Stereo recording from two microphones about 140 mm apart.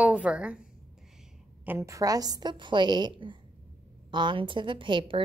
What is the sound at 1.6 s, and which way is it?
A woman's voice, 20° right (ahead or behind).